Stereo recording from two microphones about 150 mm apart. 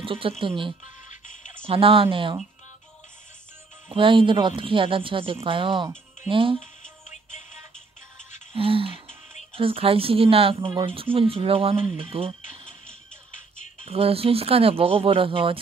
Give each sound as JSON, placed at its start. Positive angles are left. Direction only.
{"t": 0.0, "sound": "speech", "side_deg": -35}
{"t": 1.0, "sound": "music", "side_deg": 55}
{"t": 1.6, "sound": "speech", "side_deg": -40}
{"t": 3.9, "sound": "speech", "side_deg": -35}
{"t": 7.1, "sound": "music", "side_deg": 55}
{"t": 8.5, "sound": "speech", "side_deg": -35}
{"t": 13.8, "sound": "speech", "side_deg": -40}